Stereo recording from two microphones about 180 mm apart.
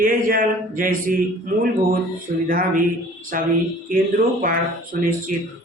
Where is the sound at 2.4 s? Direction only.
50° right (ahead or behind).